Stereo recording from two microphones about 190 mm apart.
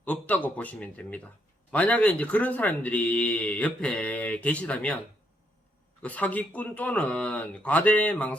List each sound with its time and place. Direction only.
0.0 s speech: 10° left (ahead or behind)
6.0 s speech: 10° left (ahead or behind)